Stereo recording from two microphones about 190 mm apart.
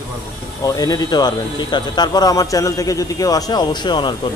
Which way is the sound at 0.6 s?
20° left (ahead or behind).